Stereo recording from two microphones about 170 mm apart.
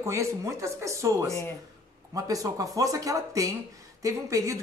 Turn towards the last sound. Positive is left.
turn(degrees=-20)  # may be behind; listen again after turning